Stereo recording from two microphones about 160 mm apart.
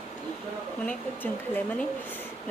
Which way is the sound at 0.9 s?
10° left (ahead or behind).